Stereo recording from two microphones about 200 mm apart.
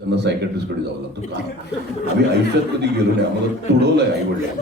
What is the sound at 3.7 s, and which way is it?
Speech, 55° right (ahead or behind).